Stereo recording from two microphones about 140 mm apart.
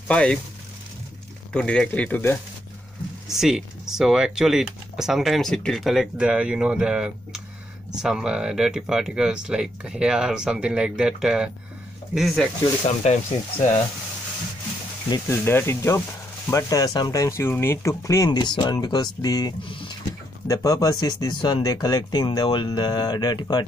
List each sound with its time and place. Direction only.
0.1 s speech: 10° left (ahead or behind)
1.5 s speech: 5° left (ahead or behind)
3.3 s speech: 5° right (ahead or behind)
12.8 s speech: 50° left (ahead or behind)
15.0 s speech: 25° left (ahead or behind)
20.4 s speech: 25° left (ahead or behind)